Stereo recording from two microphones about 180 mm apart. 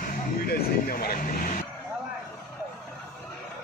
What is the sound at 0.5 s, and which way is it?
Speech, 55° left (ahead or behind).